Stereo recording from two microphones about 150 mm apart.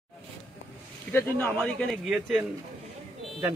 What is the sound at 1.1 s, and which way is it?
Speech, 15° left (ahead or behind).